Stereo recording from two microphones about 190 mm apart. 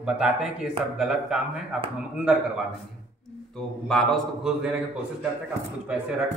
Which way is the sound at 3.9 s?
Centre (ahead or behind).